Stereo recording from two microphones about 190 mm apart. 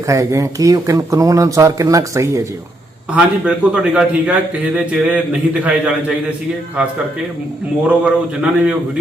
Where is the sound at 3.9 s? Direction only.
5° right (ahead or behind).